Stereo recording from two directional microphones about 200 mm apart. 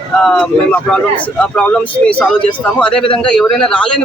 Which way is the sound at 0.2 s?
5° left (ahead or behind).